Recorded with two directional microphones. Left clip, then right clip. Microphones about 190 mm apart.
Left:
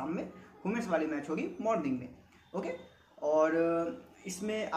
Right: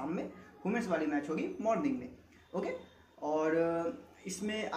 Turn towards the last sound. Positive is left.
turn(degrees=15)  # may be behind; listen again after turning